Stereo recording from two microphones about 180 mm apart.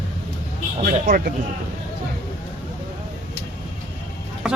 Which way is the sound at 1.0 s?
55° right (ahead or behind).